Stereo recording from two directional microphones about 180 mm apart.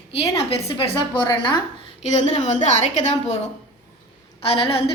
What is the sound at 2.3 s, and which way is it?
A woman's voice, 40° left (ahead or behind).